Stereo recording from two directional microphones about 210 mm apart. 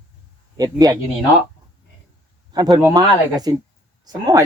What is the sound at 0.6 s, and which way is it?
Speech, 20° right (ahead or behind).